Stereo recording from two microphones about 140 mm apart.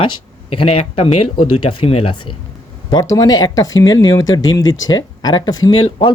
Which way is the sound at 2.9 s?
25° left (ahead or behind).